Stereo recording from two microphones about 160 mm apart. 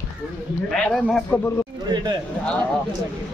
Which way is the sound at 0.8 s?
Centre (ahead or behind).